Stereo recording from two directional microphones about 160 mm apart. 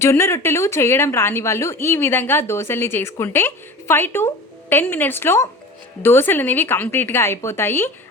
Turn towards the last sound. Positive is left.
turn(degrees=15)  # may be behind; listen again after turning